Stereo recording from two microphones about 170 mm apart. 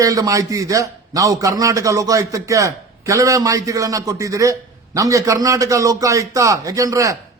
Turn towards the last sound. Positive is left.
turn(degrees=-20)  # may be behind; listen again after turning